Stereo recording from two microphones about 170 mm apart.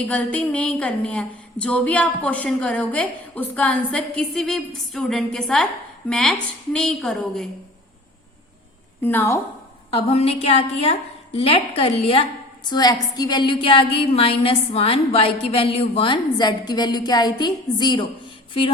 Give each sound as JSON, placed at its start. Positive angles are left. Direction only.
{"t": 0.1, "sound": "a woman's voice", "side_deg": 10}
{"t": 9.0, "sound": "a woman's voice", "side_deg": 10}
{"t": 9.9, "sound": "a woman's voice", "side_deg": 35}
{"t": 12.6, "sound": "a woman's voice", "side_deg": 25}